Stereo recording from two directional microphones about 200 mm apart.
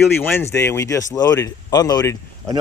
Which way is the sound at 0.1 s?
10° left (ahead or behind).